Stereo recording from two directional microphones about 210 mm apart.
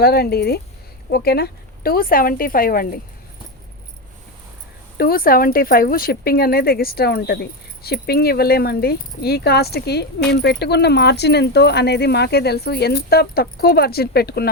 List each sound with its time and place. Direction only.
0.0 s speech: 50° left (ahead or behind)
4.9 s speech: 45° left (ahead or behind)